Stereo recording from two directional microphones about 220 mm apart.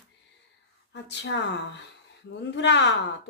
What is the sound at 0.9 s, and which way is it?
Speech, 50° left (ahead or behind).